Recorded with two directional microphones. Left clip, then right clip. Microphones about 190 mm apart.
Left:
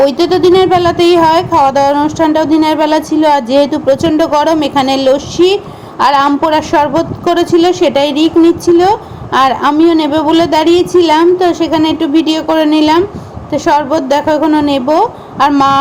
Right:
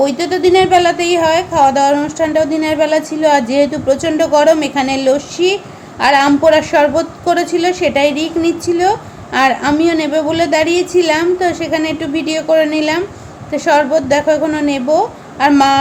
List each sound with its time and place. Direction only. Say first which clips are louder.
0.0 s a woman's voice: left 5 dB; 20° left (ahead or behind)